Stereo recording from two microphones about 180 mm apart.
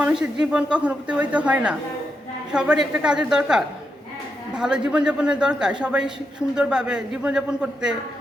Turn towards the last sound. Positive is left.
turn(degrees=-5)  # may be behind; listen again after turning